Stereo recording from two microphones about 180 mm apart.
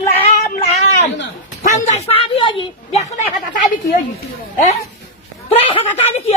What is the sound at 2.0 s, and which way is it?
A woman's voice, 35° left (ahead or behind).